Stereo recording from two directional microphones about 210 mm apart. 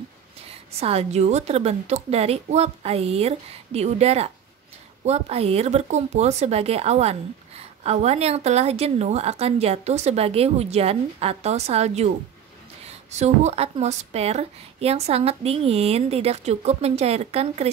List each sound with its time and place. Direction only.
0.7 s a woman's voice: 30° right (ahead or behind)